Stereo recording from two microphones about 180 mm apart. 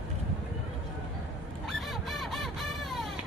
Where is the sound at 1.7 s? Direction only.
Centre (ahead or behind).